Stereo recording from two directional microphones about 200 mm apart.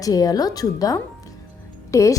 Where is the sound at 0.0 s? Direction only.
20° left (ahead or behind).